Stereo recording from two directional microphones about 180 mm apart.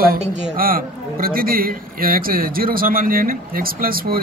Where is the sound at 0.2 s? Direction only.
45° right (ahead or behind).